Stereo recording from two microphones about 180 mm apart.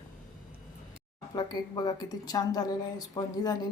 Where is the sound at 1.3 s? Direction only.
20° left (ahead or behind).